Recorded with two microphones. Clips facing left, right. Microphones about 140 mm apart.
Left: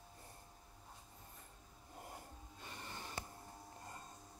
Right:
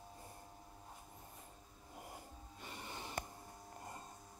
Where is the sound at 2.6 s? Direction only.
15° right (ahead or behind).